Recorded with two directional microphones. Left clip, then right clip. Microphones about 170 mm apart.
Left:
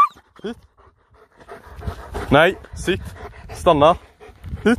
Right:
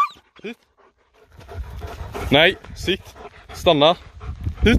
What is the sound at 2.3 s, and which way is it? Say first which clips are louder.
Speech: left 1 dB; 5° right (ahead or behind).